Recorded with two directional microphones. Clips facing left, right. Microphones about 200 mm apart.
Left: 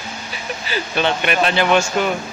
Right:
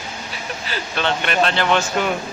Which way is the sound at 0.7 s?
10° left (ahead or behind).